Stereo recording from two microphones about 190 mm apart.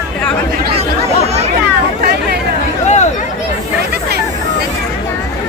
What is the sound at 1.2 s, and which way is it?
Children playing, 35° right (ahead or behind).